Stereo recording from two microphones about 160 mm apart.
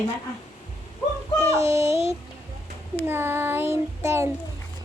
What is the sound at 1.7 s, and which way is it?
Child singing, 15° right (ahead or behind).